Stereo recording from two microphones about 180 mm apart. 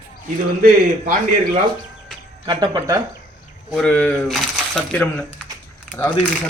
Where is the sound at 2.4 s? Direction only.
20° right (ahead or behind).